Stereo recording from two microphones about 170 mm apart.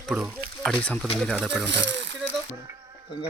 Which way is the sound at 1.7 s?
90° right.